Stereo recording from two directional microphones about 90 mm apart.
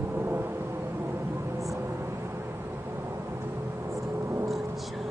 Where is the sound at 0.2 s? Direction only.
25° right (ahead or behind).